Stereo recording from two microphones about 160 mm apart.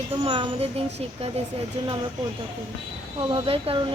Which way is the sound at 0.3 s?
35° right (ahead or behind).